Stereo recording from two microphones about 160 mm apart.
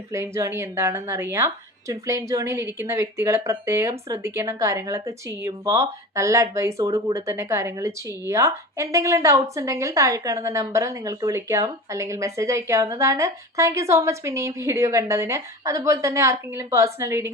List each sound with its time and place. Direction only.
0.1 s speech: 20° right (ahead or behind)